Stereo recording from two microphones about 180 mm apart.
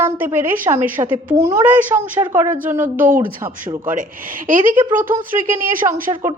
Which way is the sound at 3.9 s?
50° right (ahead or behind).